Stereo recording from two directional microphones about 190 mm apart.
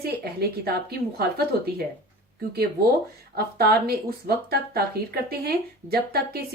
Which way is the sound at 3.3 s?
55° right (ahead or behind).